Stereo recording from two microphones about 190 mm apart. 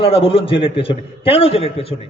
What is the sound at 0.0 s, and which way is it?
A man's voice, 30° left (ahead or behind).